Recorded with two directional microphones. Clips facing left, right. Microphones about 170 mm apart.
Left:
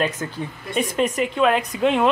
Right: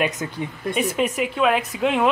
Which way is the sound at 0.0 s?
15° right (ahead or behind).